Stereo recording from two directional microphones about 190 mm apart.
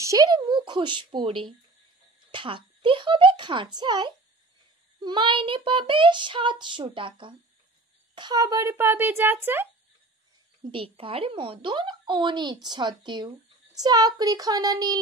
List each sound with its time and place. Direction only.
0.0 s child singing: 20° right (ahead or behind)
8.1 s speech: 25° right (ahead or behind)
10.6 s child singing: 30° right (ahead or behind)